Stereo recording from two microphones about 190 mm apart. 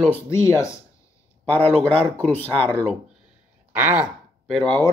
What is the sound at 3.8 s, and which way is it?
Speech, 10° right (ahead or behind).